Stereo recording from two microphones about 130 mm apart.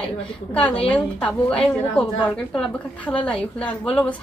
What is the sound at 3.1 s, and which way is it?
Speech, 10° left (ahead or behind).